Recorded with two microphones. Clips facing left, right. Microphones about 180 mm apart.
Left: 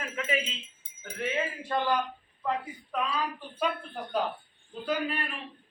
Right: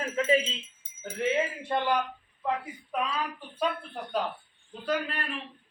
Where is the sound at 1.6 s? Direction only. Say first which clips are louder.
Left 2 dB; 20° right (ahead or behind).